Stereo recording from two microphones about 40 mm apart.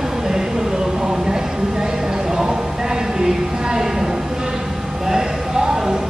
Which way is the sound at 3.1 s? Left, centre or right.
Centre.